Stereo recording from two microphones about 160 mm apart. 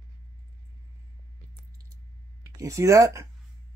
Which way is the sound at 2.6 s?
20° right (ahead or behind).